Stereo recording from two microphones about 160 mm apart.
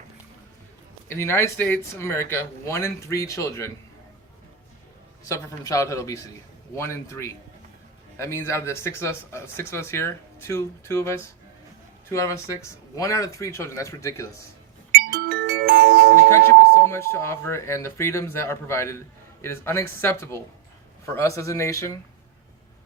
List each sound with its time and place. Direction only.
1.0 s speech: 15° left (ahead or behind)
5.3 s speech: 20° left (ahead or behind)
15.1 s music: 90° right
16.7 s speech: 15° left (ahead or behind)